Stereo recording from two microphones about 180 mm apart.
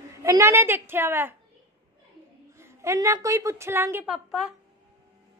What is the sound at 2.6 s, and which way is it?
A woman's voice, 15° right (ahead or behind).